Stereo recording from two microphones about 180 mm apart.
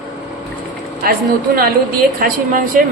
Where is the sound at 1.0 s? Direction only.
55° right (ahead or behind).